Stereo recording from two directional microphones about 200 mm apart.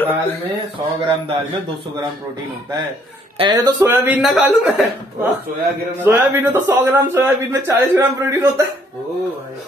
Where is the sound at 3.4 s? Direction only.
15° right (ahead or behind); by 4.9 s centre (ahead or behind).